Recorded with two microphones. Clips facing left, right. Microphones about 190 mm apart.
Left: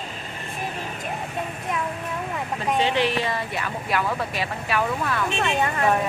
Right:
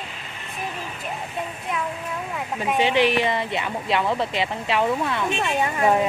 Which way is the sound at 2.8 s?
15° right (ahead or behind).